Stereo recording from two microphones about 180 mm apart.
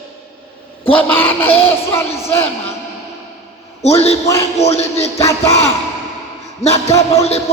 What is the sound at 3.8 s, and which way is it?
A man's voice, 35° left (ahead or behind).